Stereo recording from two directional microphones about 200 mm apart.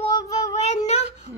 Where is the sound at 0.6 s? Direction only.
35° left (ahead or behind).